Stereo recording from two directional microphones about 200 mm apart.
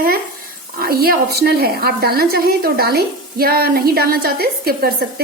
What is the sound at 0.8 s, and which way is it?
A woman's voice, 50° right (ahead or behind).